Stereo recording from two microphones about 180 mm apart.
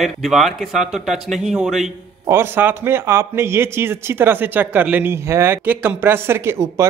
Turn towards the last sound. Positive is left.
turn(degrees=-15)  # may be behind; listen again after turning